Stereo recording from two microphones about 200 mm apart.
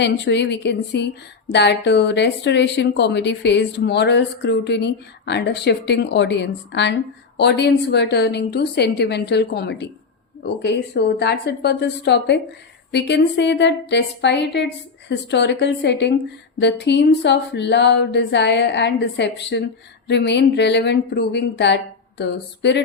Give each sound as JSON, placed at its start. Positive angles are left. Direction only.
{"t": 0.0, "sound": "a woman's voice", "side_deg": 60}